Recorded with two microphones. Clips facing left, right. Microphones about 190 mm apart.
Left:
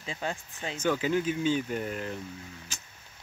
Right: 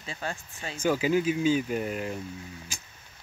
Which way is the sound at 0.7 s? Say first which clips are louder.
Right 3 dB; 10° right (ahead or behind).